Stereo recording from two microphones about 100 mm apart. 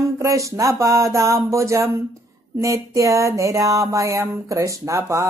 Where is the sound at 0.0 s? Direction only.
30° right (ahead or behind).